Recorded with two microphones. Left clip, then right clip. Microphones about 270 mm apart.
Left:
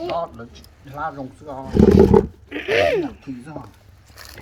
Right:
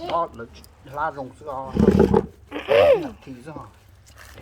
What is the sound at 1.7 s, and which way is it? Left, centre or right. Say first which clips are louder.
Speech: left 5 dB; left.